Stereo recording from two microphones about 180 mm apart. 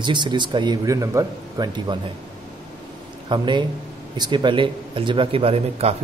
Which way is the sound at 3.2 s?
25° right (ahead or behind).